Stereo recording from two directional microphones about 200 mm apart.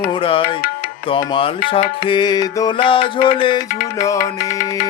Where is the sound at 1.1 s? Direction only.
25° left (ahead or behind).